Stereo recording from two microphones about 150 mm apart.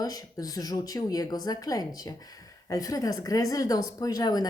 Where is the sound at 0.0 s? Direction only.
25° left (ahead or behind).